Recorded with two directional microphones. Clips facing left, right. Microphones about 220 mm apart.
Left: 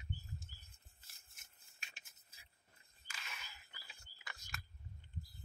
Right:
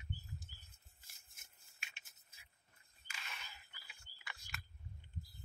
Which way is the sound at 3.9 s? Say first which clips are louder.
Even; 40° left (ahead or behind).